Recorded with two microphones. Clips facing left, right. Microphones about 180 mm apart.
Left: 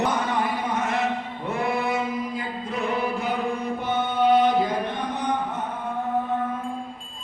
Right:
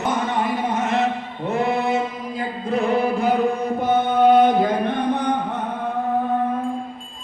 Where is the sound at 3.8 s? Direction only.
50° right (ahead or behind).